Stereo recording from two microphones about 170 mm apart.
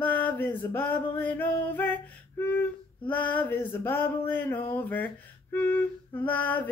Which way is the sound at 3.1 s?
10° left (ahead or behind).